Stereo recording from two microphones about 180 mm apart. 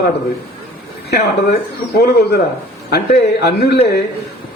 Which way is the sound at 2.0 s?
65° left (ahead or behind).